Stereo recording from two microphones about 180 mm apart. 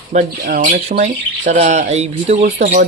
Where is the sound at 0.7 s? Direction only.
40° right (ahead or behind).